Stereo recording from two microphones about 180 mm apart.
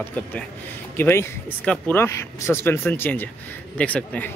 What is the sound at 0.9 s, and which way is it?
Speech, 15° left (ahead or behind).